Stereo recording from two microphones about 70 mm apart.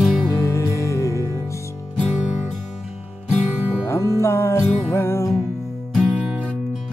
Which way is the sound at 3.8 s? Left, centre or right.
Left.